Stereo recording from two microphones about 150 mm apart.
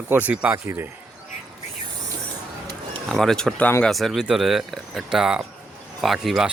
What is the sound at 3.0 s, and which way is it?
Speech, 5° left (ahead or behind).